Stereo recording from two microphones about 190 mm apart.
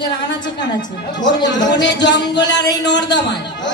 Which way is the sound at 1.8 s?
65° left (ahead or behind).